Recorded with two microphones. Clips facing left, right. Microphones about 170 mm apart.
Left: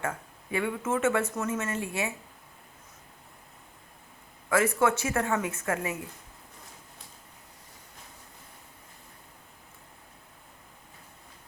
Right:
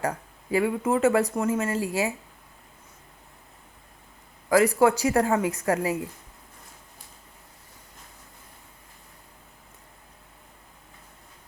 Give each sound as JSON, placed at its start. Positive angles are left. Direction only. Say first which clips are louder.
{"t": 0.0, "sound": "speech", "louder": "right 5 dB", "side_deg": -35}
{"t": 4.4, "sound": "speech", "louder": "right 5 dB", "side_deg": -35}